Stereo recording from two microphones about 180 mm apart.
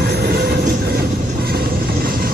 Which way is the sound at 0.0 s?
60° right (ahead or behind).